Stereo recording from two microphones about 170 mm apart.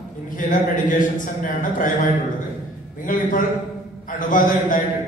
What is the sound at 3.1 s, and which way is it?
A man's voice, 55° left (ahead or behind).